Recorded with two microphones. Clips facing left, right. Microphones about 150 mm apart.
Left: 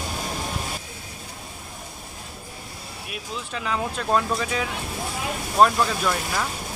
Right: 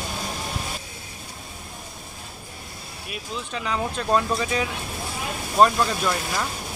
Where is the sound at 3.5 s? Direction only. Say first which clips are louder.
Even; centre (ahead or behind).